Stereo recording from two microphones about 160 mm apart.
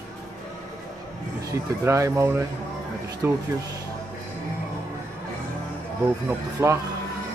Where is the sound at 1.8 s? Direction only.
15° right (ahead or behind).